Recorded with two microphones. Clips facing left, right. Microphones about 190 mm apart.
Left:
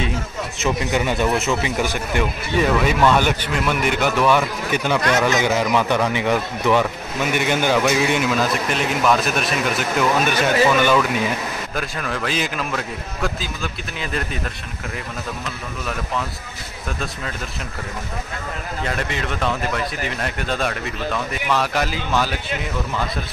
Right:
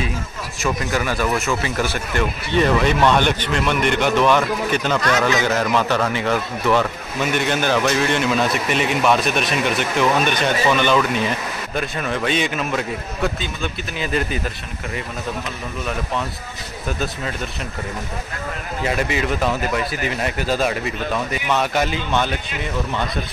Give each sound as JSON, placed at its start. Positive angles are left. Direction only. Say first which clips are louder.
{"t": 0.6, "sound": "speech", "louder": "left 1 dB", "side_deg": 20}
{"t": 18.9, "sound": "speech", "louder": "right 5 dB", "side_deg": -5}